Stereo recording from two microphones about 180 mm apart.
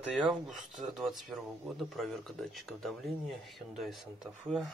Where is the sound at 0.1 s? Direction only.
5° right (ahead or behind).